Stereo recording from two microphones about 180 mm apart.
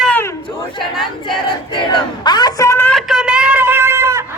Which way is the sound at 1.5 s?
25° left (ahead or behind).